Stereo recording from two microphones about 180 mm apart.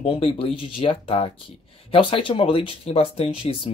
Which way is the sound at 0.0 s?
30° left (ahead or behind).